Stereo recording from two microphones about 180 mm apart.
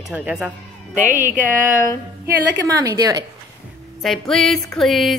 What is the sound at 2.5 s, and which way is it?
Speech, 20° right (ahead or behind).